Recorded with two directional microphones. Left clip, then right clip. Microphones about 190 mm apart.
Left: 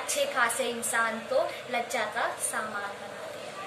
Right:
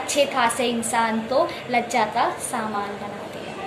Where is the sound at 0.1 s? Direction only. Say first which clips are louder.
Right 7 dB; 20° left (ahead or behind).